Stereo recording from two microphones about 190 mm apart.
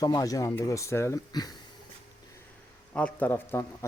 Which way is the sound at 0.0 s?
20° left (ahead or behind).